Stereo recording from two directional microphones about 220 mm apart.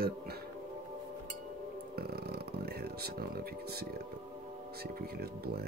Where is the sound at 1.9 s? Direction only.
45° right (ahead or behind).